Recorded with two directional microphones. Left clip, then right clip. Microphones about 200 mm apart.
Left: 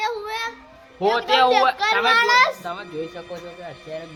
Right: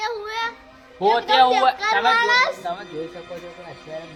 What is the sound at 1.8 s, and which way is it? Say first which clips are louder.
Speech: left 1 dB; 5° left (ahead or behind).